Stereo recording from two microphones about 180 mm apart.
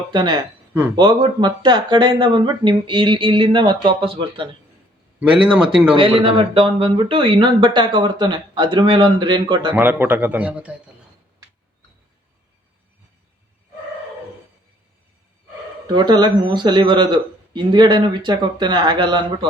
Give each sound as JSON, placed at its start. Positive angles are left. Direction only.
{"t": 0.1, "sound": "speech", "side_deg": -25}
{"t": 5.2, "sound": "speech", "side_deg": -5}
{"t": 5.9, "sound": "speech", "side_deg": -30}
{"t": 9.7, "sound": "speech", "side_deg": -10}
{"t": 16.0, "sound": "speech", "side_deg": -25}